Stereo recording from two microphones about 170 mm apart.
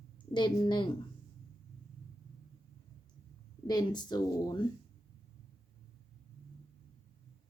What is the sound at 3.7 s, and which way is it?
Speech, 25° left (ahead or behind).